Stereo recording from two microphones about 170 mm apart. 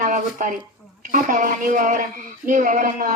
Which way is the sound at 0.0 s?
50° right (ahead or behind).